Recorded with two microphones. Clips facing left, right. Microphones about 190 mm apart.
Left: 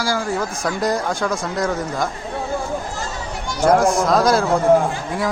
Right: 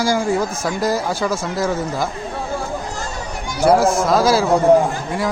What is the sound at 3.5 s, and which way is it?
Speech, 10° right (ahead or behind).